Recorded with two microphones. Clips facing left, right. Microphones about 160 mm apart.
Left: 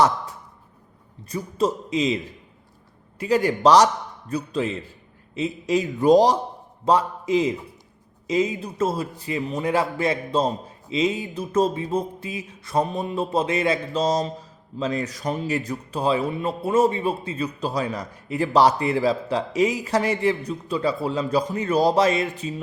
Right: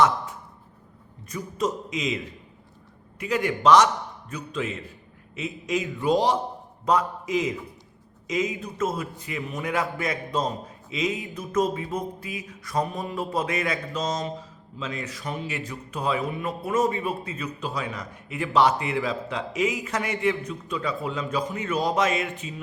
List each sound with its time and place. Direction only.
1.3 s a man's voice: 30° left (ahead or behind)